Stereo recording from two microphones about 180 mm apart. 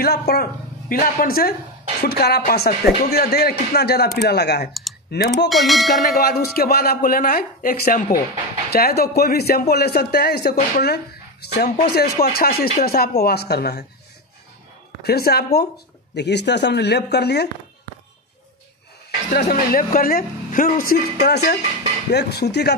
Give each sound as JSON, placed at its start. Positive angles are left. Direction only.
{"t": 0.0, "sound": "speech", "side_deg": 60}
{"t": 5.5, "sound": "bell", "side_deg": 0}
{"t": 6.1, "sound": "speech", "side_deg": 60}
{"t": 15.0, "sound": "speech", "side_deg": 60}
{"t": 19.4, "sound": "a woman's voice", "side_deg": 50}